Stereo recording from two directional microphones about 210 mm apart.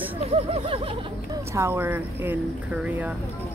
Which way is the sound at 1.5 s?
10° right (ahead or behind).